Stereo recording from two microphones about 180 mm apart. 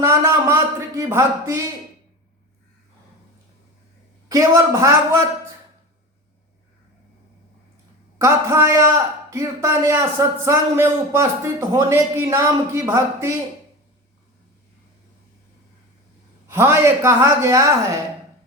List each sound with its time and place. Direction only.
0.0 s a man's voice: 15° right (ahead or behind)
4.3 s a man's voice: 15° right (ahead or behind)
8.2 s a man's voice: 15° right (ahead or behind)
16.5 s a man's voice: 15° right (ahead or behind)